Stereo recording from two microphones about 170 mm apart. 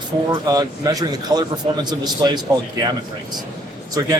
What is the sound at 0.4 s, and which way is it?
A man's voice, 20° right (ahead or behind).